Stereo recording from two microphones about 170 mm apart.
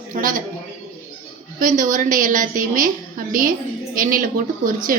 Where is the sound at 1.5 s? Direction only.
50° right (ahead or behind).